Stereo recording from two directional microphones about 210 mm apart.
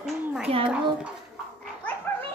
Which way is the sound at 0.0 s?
5° right (ahead or behind).